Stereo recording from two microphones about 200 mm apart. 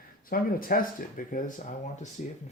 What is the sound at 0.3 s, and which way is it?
Speech, 45° left (ahead or behind).